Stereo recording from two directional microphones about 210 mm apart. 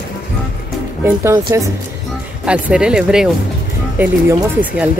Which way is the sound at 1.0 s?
10° right (ahead or behind).